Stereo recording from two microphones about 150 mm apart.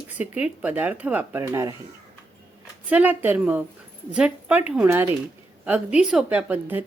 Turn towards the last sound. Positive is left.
turn(degrees=-10)  # may be behind; listen again after turning